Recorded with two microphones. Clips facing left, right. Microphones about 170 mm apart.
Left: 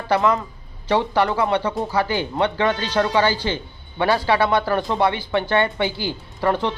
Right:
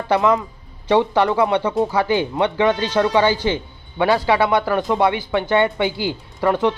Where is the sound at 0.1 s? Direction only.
20° right (ahead or behind).